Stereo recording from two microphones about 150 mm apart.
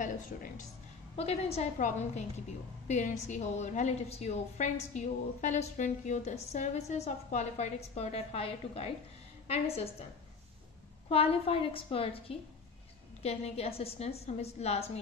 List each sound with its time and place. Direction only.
0.0 s speech: 60° left (ahead or behind)
1.1 s a woman's voice: 45° left (ahead or behind)
11.1 s a woman's voice: 40° left (ahead or behind)